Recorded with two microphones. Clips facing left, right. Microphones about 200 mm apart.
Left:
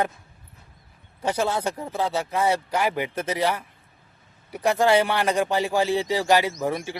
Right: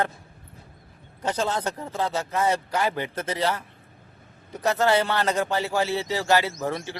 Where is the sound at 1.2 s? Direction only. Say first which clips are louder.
Left 2 dB; 10° left (ahead or behind).